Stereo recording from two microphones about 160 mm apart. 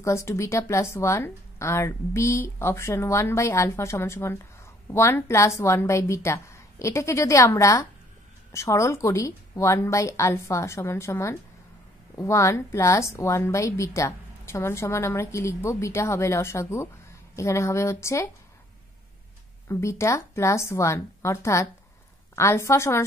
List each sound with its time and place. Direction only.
0.0 s a woman's voice: 15° left (ahead or behind)
19.7 s a woman's voice: 20° left (ahead or behind)